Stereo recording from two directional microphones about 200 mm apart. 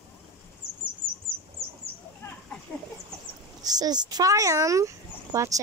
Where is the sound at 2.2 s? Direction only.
15° left (ahead or behind).